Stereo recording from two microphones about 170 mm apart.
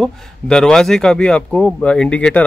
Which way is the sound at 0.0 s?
5° left (ahead or behind).